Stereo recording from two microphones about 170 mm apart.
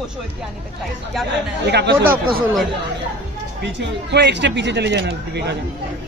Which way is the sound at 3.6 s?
80° right.